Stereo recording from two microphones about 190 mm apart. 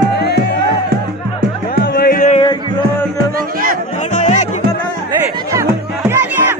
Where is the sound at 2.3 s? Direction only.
30° left (ahead or behind).